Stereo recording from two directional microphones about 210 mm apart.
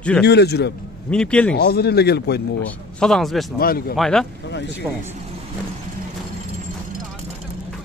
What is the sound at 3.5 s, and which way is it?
Speech, 45° left (ahead or behind).